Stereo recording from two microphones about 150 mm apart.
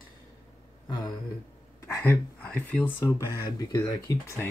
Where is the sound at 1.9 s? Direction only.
15° left (ahead or behind).